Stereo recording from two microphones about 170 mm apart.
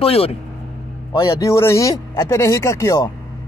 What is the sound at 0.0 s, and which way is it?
Speech, 35° left (ahead or behind).